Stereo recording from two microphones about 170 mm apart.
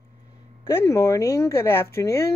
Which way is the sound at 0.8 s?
15° left (ahead or behind).